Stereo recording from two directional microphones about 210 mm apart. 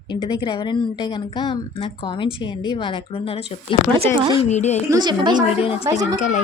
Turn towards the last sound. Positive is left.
turn(degrees=35)  # may be behind; listen again after turning